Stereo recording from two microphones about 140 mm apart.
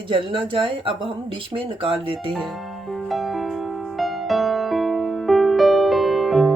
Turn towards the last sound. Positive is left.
turn(degrees=0)  # may be behind; listen again after turning